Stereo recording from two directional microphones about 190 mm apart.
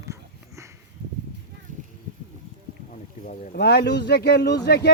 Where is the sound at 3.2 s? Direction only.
40° left (ahead or behind).